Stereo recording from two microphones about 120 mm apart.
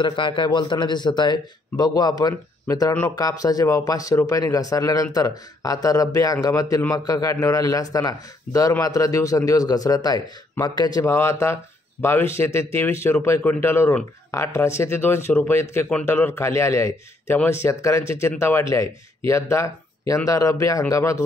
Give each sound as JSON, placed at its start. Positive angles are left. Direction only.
{"t": 0.0, "sound": "a man's voice", "side_deg": 45}